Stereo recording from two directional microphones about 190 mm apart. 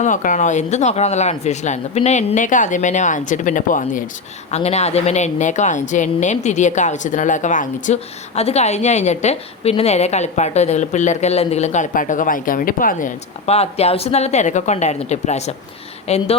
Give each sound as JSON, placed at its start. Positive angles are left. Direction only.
{"t": 0.0, "sound": "a woman's voice", "side_deg": 40}